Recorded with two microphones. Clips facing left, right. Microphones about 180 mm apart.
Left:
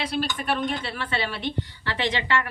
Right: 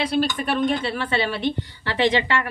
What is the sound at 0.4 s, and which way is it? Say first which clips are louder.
A woman's voice: right 5 dB; 20° right (ahead or behind).